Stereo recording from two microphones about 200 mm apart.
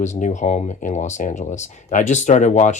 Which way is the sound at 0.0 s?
35° left (ahead or behind).